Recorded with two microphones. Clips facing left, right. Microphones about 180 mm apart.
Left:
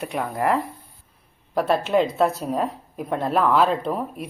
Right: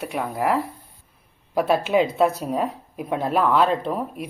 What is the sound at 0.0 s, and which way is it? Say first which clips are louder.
Speech: even; 5° right (ahead or behind).